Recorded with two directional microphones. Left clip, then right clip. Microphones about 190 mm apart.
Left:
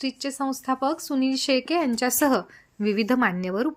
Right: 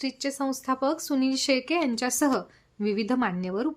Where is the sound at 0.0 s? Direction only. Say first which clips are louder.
Left 1 dB; 10° left (ahead or behind).